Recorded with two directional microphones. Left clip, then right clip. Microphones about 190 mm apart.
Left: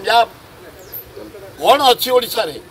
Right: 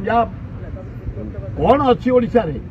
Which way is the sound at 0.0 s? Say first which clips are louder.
Left 4 dB; 10° left (ahead or behind).